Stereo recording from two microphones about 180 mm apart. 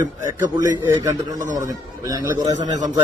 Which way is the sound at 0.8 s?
20° right (ahead or behind).